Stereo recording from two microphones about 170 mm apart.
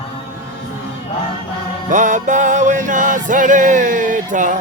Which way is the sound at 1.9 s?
50° right (ahead or behind).